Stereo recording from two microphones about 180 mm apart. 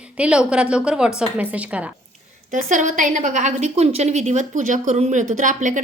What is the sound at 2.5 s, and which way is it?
A woman's voice, 45° right (ahead or behind).